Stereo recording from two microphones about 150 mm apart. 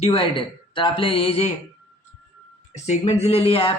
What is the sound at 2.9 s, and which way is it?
Speech, 45° left (ahead or behind).